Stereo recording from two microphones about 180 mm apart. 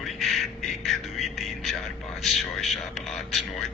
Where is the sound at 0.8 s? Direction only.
Centre (ahead or behind).